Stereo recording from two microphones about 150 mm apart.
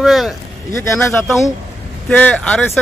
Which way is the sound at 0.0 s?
Centre (ahead or behind).